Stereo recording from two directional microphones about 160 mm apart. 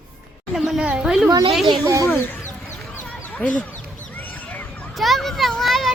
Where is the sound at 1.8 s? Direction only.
20° right (ahead or behind).